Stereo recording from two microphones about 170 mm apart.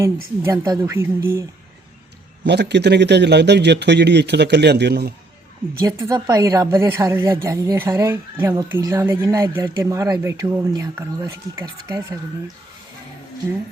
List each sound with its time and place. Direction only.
0.4 s speech: 20° right (ahead or behind)
2.4 s a man's voice: 80° right
5.8 s speech: 20° right (ahead or behind)